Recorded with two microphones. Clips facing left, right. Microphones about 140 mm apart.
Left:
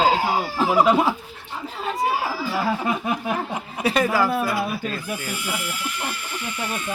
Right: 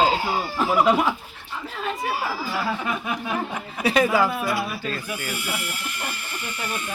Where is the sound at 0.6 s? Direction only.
30° left (ahead or behind).